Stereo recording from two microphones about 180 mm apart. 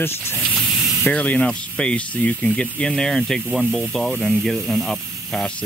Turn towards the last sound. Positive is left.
turn(degrees=0)  # may be behind; listen again after turning